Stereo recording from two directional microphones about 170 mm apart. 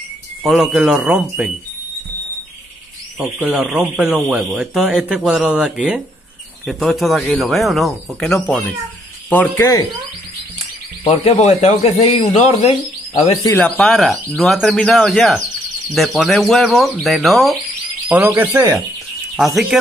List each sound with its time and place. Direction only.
0.4 s speech: centre (ahead or behind)
3.2 s a man's voice: 5° right (ahead or behind); by 9.8 s 10° left (ahead or behind)
11.4 s speech: 40° left (ahead or behind)
13.6 s speech: 10° left (ahead or behind)
18.2 s speech: 15° right (ahead or behind)
19.3 s speech: centre (ahead or behind)